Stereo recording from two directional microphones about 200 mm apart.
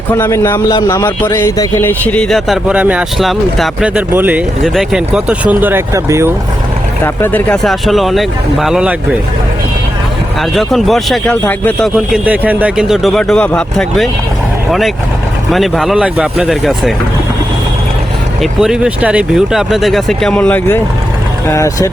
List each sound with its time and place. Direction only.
0.2 s a man's voice: 15° left (ahead or behind); by 6.3 s 15° right (ahead or behind)
7.0 s speech: 10° left (ahead or behind)
10.5 s speech: centre (ahead or behind)
11.9 s speech: 5° right (ahead or behind)
18.6 s a man's voice: 5° right (ahead or behind); by 21.8 s 15° left (ahead or behind)